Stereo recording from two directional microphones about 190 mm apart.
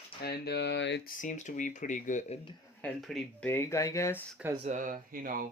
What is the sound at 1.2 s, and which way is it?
Speech, 40° left (ahead or behind).